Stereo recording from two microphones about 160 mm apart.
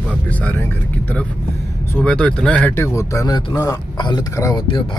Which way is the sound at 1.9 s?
5° left (ahead or behind).